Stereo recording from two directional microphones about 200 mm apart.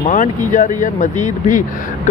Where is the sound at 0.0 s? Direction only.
40° left (ahead or behind).